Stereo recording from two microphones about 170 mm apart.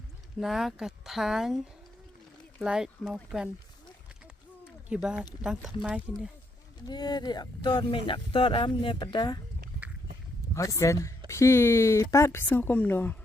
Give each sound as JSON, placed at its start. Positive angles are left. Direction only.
{"t": 0.3, "sound": "speech", "side_deg": 0}
{"t": 4.9, "sound": "speech", "side_deg": -5}
{"t": 6.8, "sound": "speech", "side_deg": 25}
{"t": 10.5, "sound": "speech", "side_deg": 20}